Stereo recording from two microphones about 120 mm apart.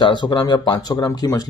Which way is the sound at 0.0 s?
40° left (ahead or behind).